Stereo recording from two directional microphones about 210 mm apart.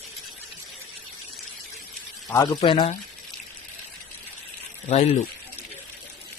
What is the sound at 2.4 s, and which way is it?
Speech, 25° left (ahead or behind).